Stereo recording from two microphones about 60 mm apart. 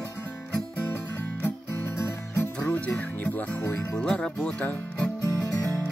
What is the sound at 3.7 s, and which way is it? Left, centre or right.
Speech, centre.